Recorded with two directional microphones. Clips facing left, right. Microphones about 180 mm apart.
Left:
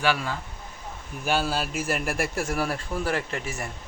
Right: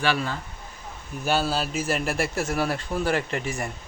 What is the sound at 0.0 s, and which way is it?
Speech, 10° left (ahead or behind).